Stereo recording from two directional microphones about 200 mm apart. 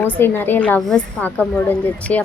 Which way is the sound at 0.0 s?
10° left (ahead or behind).